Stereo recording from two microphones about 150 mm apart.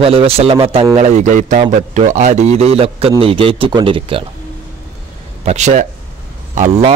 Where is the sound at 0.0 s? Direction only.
40° right (ahead or behind).